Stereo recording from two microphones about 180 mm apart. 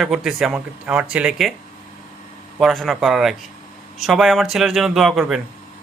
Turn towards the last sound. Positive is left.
turn(degrees=0)  # may be behind; listen again after turning